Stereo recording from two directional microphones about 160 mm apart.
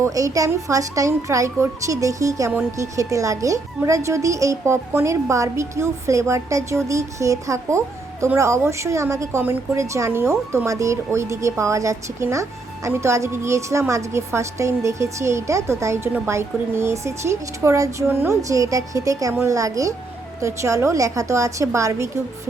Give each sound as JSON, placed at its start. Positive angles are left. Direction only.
{"t": 0.0, "sound": "a woman's voice", "side_deg": -20}